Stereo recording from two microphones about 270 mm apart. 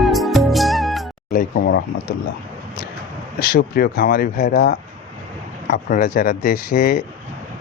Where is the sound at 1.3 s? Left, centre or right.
Left.